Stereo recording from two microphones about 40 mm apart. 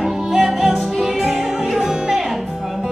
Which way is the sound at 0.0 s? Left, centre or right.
Centre.